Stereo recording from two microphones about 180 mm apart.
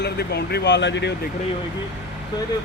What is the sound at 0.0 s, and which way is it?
Speech, 65° left (ahead or behind).